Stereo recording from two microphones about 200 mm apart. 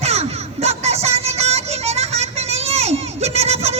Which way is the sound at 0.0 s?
30° right (ahead or behind).